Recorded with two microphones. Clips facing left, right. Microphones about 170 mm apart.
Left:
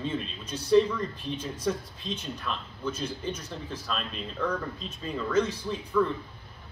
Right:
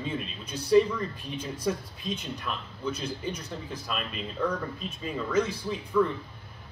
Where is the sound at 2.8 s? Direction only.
10° right (ahead or behind).